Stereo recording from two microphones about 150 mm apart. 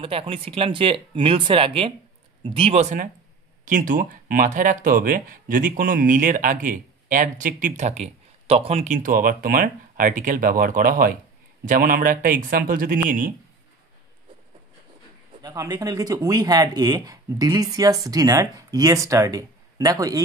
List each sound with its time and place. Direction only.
0.0 s speech: 35° right (ahead or behind); by 7.9 s 55° right (ahead or behind)
8.0 s speech: 45° right (ahead or behind); by 13.3 s 65° right (ahead or behind)
15.4 s speech: 25° right (ahead or behind)